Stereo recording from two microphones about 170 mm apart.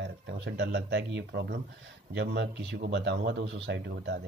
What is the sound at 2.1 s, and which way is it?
A man's voice, 90° right.